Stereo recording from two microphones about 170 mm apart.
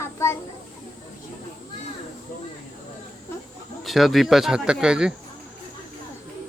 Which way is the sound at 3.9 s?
Centre (ahead or behind).